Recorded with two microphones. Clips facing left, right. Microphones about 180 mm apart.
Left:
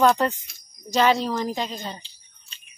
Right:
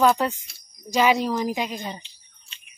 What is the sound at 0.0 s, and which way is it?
Speech, 5° right (ahead or behind).